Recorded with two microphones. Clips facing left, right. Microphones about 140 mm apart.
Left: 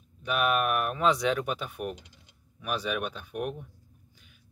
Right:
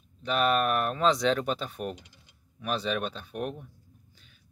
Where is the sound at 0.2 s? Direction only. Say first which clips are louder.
Right 1 dB; 10° left (ahead or behind).